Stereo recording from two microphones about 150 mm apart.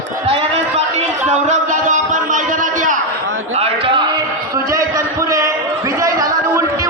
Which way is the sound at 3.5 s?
40° right (ahead or behind).